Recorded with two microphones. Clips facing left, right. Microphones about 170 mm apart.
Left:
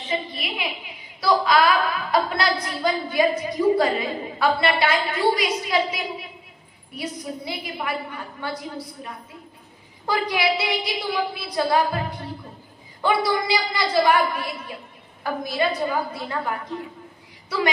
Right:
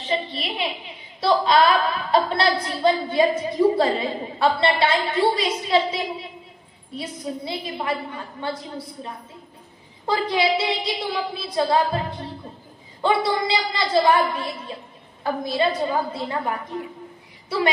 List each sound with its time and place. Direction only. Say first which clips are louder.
0.0 s a woman's voice: right 2 dB; 30° right (ahead or behind)
7.0 s a woman's voice: right 1 dB; 25° right (ahead or behind)